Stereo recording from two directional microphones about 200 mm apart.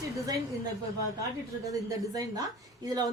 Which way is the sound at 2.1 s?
15° right (ahead or behind).